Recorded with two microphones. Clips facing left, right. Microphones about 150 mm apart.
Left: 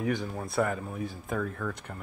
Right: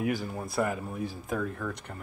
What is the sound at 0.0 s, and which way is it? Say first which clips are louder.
Speech: even; 5° right (ahead or behind).